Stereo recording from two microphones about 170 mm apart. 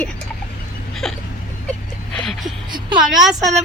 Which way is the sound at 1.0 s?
Centre (ahead or behind).